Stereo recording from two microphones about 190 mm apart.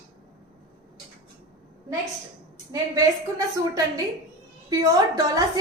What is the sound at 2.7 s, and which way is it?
A woman's voice, 20° right (ahead or behind).